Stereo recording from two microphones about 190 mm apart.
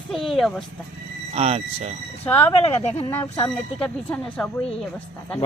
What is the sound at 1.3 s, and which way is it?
Speech, 35° right (ahead or behind).